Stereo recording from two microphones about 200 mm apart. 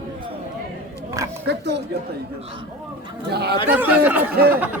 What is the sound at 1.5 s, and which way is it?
Speech, 60° right (ahead or behind).